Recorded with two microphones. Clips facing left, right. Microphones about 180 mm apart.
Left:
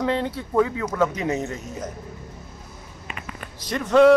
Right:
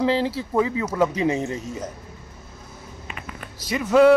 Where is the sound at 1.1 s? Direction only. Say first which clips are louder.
Right 3 dB; 30° right (ahead or behind).